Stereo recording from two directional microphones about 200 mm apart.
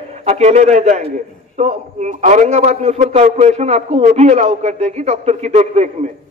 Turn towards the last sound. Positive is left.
turn(degrees=-35)  # may be behind; listen again after turning